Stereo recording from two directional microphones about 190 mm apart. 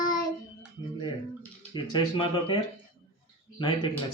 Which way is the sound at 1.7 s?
25° left (ahead or behind).